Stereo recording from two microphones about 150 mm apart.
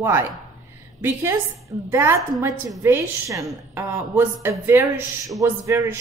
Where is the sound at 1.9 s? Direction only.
15° right (ahead or behind).